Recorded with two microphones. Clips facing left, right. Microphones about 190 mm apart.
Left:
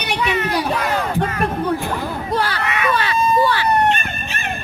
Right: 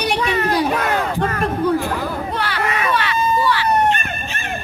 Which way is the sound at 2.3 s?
40° left (ahead or behind).